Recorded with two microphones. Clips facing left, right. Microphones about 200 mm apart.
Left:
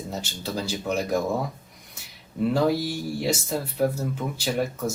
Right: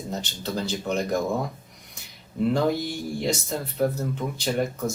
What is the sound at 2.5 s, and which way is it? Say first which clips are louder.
Speech: left 3 dB; 5° left (ahead or behind).